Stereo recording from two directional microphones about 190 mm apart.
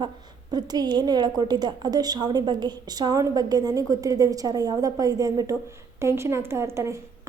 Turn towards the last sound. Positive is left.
turn(degrees=-15)  # may be behind; listen again after turning